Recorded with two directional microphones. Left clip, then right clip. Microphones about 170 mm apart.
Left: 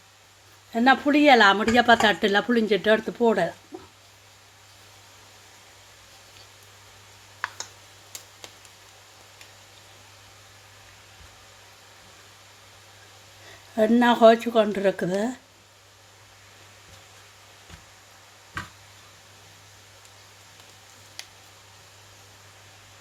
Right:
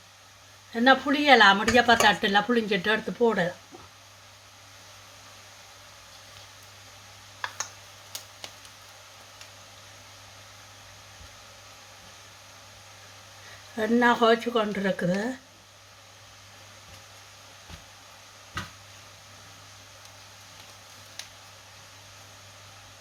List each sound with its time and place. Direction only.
0.7 s speech: 40° left (ahead or behind)
13.7 s speech: 50° left (ahead or behind)